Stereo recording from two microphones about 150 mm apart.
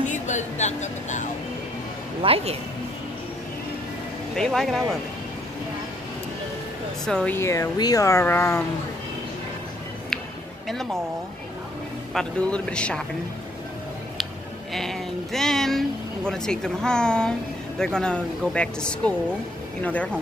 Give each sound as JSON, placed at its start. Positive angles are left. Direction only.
{"t": 0.0, "sound": "speech", "side_deg": 55}
{"t": 2.2, "sound": "speech", "side_deg": -40}
{"t": 4.4, "sound": "speech", "side_deg": 0}
{"t": 7.1, "sound": "speech", "side_deg": 5}
{"t": 7.3, "sound": "speech", "side_deg": 20}
{"t": 10.7, "sound": "speech", "side_deg": 0}
{"t": 12.1, "sound": "a man's voice", "side_deg": 5}
{"t": 14.7, "sound": "a sound", "side_deg": 0}
{"t": 16.3, "sound": "a man's voice", "side_deg": 5}